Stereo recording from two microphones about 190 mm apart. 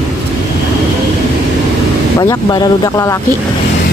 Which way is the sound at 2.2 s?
20° left (ahead or behind).